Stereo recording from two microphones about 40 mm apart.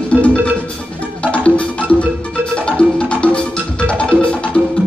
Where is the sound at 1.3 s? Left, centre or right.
Left.